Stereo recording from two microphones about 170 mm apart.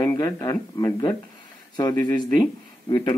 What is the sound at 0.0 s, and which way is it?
Speech, 15° left (ahead or behind).